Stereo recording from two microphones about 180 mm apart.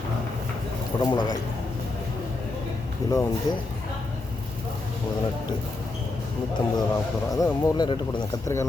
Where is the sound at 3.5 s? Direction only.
20° left (ahead or behind).